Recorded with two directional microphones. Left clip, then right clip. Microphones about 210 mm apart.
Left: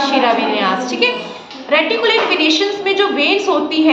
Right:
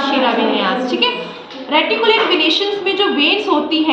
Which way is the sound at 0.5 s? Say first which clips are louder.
Even; 25° left (ahead or behind).